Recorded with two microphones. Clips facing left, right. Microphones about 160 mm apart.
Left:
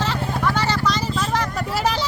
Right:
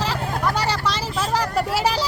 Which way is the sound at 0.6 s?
35° right (ahead or behind).